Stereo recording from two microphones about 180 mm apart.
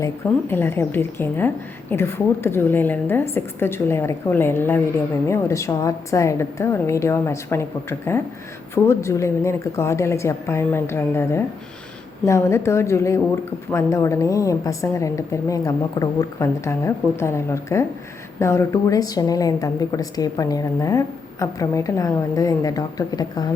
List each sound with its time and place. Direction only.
0.0 s a woman's voice: 10° left (ahead or behind)